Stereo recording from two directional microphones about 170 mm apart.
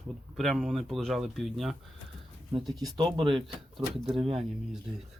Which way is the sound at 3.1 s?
30° right (ahead or behind).